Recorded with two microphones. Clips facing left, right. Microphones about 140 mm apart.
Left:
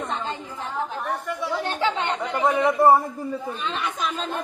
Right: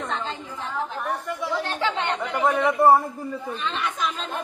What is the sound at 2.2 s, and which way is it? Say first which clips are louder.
Chatter: left 1 dB; centre (ahead or behind).